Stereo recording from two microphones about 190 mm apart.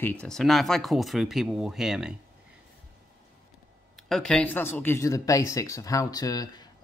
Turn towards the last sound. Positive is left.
turn(degrees=20)  # may be behind; listen again after turning